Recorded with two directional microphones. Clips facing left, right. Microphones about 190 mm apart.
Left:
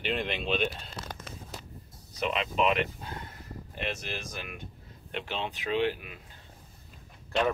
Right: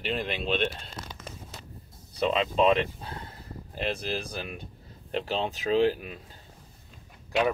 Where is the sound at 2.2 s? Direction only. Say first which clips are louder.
Right 4 dB; 30° right (ahead or behind).